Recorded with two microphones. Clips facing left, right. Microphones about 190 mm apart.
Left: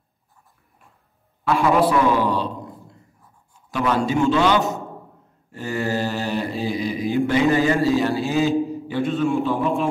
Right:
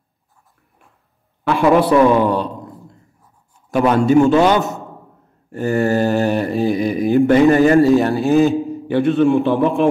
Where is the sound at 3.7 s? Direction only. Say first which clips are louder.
Right 8 dB; 55° right (ahead or behind).